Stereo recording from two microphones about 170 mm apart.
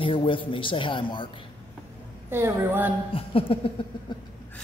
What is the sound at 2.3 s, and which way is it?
Speech, 15° right (ahead or behind).